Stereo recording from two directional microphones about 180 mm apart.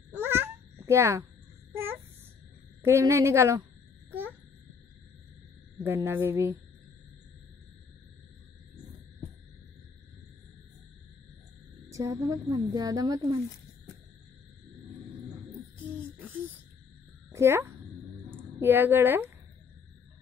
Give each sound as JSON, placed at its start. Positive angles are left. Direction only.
{"t": 0.2, "sound": "babbling", "side_deg": -10}
{"t": 1.7, "sound": "a sound", "side_deg": -10}
{"t": 2.8, "sound": "a woman's voice", "side_deg": -15}
{"t": 4.1, "sound": "babbling", "side_deg": -10}
{"t": 6.0, "sound": "a woman's voice", "side_deg": -10}
{"t": 11.9, "sound": "a woman's voice", "side_deg": -15}
{"t": 17.3, "sound": "a woman's voice", "side_deg": -15}